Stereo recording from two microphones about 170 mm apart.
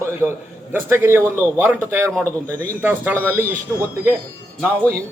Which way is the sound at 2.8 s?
10° right (ahead or behind).